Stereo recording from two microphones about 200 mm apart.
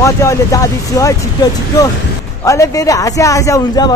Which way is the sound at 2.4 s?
15° left (ahead or behind).